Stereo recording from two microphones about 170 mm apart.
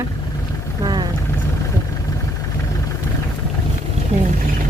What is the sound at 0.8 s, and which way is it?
Vehicle, 25° right (ahead or behind).